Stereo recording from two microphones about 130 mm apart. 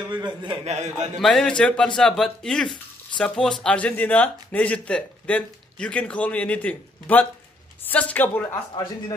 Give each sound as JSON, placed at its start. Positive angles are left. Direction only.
{"t": 0.1, "sound": "a man's voice", "side_deg": -35}
{"t": 0.7, "sound": "a man's voice", "side_deg": -60}
{"t": 1.2, "sound": "a man's voice", "side_deg": 5}